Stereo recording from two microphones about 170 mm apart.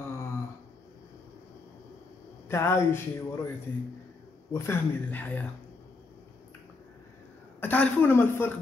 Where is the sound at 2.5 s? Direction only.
15° left (ahead or behind).